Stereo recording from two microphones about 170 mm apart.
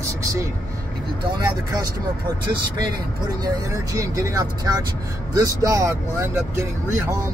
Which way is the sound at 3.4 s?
20° right (ahead or behind).